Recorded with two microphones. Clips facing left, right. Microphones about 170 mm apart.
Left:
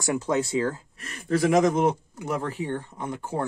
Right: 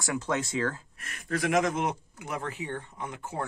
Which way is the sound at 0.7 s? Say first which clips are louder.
Left 4 dB; 30° left (ahead or behind).